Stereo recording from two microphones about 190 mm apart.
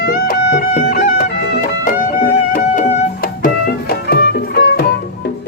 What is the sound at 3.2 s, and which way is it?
Music, 50° left (ahead or behind).